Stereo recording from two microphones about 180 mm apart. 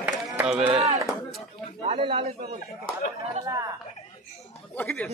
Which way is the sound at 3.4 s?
20° right (ahead or behind).